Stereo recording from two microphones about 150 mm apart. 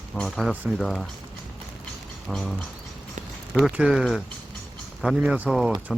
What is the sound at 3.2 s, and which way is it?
Clip-clop, 55° right (ahead or behind).